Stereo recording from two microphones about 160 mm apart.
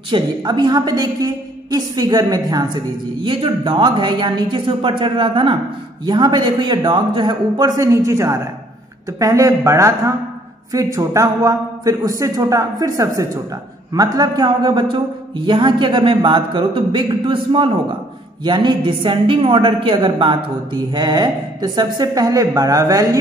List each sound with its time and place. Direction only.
0.1 s a man's voice: 30° right (ahead or behind)